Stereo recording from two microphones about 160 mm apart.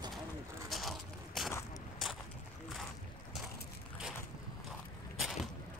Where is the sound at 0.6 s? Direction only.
Centre (ahead or behind).